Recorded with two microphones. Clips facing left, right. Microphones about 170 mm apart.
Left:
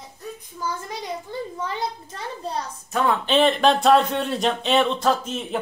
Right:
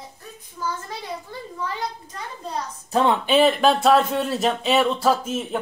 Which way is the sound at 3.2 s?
5° right (ahead or behind).